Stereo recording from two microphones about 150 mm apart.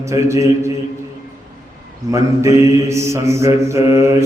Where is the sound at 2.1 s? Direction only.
20° right (ahead or behind).